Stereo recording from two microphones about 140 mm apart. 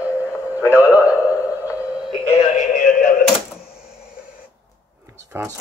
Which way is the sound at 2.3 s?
50° left (ahead or behind).